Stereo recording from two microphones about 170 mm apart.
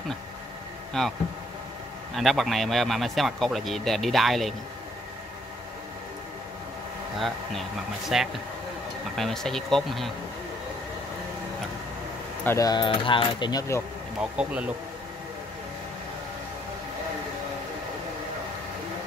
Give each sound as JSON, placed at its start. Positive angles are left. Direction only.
{"t": 1.0, "sound": "speech", "side_deg": 0}
{"t": 2.1, "sound": "speech", "side_deg": 0}
{"t": 7.2, "sound": "speech", "side_deg": 0}
{"t": 12.4, "sound": "speech", "side_deg": 20}
{"t": 14.3, "sound": "speech", "side_deg": -5}